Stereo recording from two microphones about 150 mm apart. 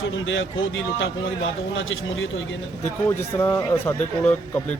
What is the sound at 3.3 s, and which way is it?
A man's voice, 20° left (ahead or behind).